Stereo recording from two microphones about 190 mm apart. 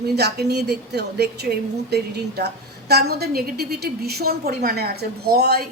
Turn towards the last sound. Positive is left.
turn(degrees=-55)  # may be behind; listen again after turning